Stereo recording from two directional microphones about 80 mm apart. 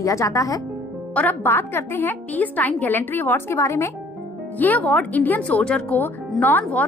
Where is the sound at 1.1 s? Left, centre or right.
Left.